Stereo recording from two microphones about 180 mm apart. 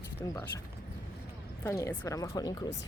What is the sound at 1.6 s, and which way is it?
Speech, 15° left (ahead or behind).